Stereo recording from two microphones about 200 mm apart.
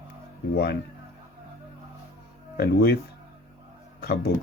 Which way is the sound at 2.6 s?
55° left (ahead or behind).